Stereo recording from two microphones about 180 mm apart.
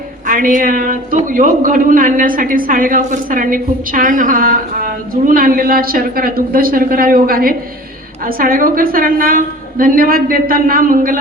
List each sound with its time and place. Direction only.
0.3 s a man's voice: 50° right (ahead or behind)